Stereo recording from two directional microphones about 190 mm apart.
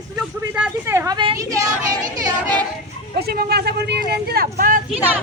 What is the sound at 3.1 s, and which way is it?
Speech, 60° right (ahead or behind).